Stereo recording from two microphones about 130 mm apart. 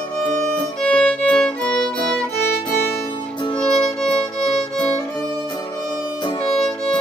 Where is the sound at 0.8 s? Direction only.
5° left (ahead or behind).